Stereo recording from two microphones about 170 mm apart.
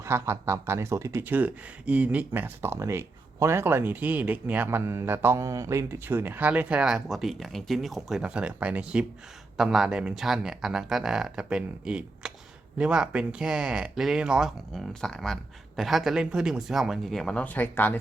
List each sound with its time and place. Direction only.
0.0 s speech: 15° right (ahead or behind); by 18.0 s 10° left (ahead or behind)